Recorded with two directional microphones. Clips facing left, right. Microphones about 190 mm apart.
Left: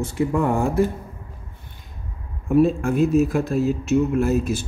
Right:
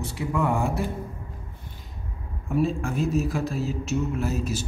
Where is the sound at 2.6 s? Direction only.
55° left (ahead or behind).